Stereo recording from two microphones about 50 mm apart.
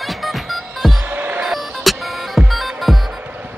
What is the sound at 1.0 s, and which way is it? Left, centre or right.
Music, right.